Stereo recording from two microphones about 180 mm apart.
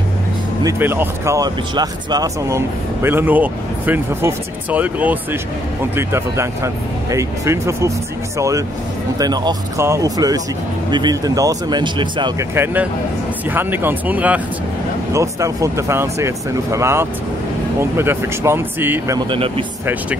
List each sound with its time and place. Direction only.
0.7 s speech: 10° right (ahead or behind)
13.5 s speech: 10° right (ahead or behind)
19.1 s speech: 30° right (ahead or behind)